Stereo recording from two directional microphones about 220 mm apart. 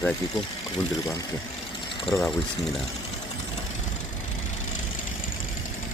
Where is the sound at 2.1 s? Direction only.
10° left (ahead or behind).